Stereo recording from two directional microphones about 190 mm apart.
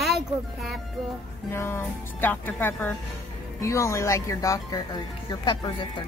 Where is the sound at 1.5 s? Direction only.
10° left (ahead or behind).